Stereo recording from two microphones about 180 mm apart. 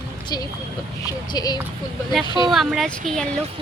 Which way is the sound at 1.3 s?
20° left (ahead or behind).